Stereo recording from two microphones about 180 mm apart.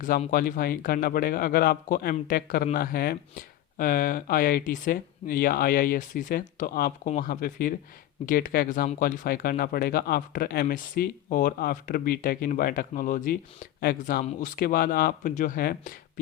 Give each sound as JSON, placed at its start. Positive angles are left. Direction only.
{"t": 0.3, "sound": "speech", "side_deg": 50}